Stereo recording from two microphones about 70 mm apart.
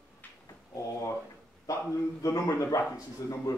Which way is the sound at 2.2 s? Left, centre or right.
Left.